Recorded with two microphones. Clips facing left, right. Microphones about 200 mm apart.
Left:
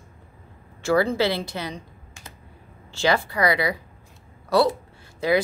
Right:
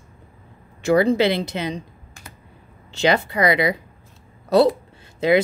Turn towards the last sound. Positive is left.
turn(degrees=-20)  # may be behind; listen again after turning